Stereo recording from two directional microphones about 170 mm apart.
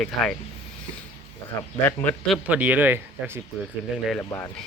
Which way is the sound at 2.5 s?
10° right (ahead or behind).